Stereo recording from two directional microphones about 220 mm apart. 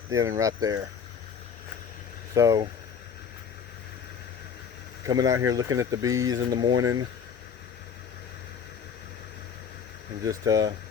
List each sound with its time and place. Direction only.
0.1 s speech: 15° right (ahead or behind)
2.3 s speech: 15° right (ahead or behind)
5.0 s speech: 15° right (ahead or behind)
10.2 s speech: 15° right (ahead or behind)